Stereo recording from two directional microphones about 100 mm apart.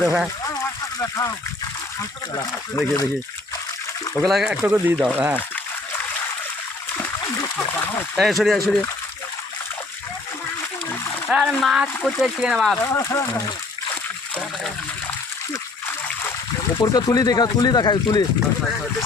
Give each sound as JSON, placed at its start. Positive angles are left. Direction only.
{"t": 0.4, "sound": "a sound", "side_deg": 35}
{"t": 2.7, "sound": "speech", "side_deg": 35}
{"t": 4.2, "sound": "speech", "side_deg": 0}
{"t": 4.6, "sound": "speech", "side_deg": -20}
{"t": 8.1, "sound": "speech", "side_deg": 0}
{"t": 11.3, "sound": "speech", "side_deg": -5}
{"t": 12.7, "sound": "speech", "side_deg": 20}
{"t": 13.0, "sound": "speech", "side_deg": 30}
{"t": 16.8, "sound": "speech", "side_deg": 40}